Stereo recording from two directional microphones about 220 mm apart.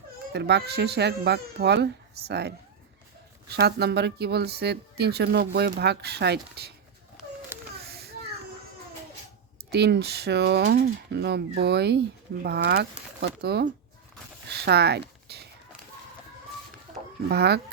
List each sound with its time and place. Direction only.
0.3 s speech: 50° right (ahead or behind)
3.5 s speech: 50° right (ahead or behind)
7.9 s children playing: 45° right (ahead or behind)
9.7 s speech: 50° right (ahead or behind)
17.2 s speech: 50° right (ahead or behind)